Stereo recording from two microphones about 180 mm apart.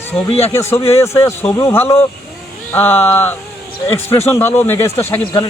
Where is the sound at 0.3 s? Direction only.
35° left (ahead or behind).